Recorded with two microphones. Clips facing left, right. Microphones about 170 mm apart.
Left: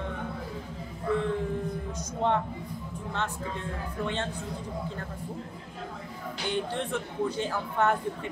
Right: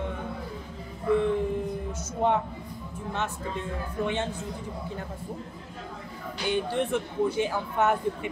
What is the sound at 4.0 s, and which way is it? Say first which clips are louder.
Speech: right 3 dB; 10° right (ahead or behind).